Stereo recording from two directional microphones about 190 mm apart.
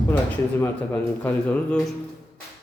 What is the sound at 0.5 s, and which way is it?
A man's voice, 10° left (ahead or behind).